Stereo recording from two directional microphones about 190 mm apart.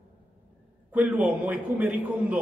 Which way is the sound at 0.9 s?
10° right (ahead or behind).